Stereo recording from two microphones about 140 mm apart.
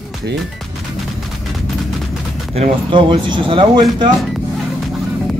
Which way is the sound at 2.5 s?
35° right (ahead or behind).